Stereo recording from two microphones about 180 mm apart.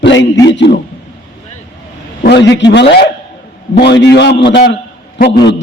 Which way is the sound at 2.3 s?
80° left.